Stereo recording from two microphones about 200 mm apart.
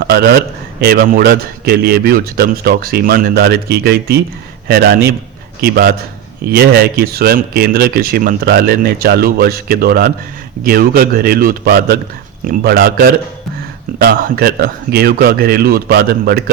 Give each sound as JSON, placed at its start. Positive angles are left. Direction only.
{"t": 0.0, "sound": "speech", "side_deg": -55}